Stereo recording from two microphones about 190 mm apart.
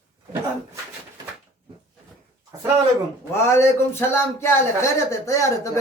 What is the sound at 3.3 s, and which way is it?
A man's voice, 15° left (ahead or behind).